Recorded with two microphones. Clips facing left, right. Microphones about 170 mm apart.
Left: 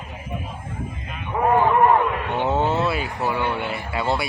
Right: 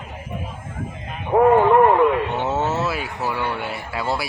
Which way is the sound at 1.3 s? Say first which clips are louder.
Right 8 dB; 70° right (ahead or behind).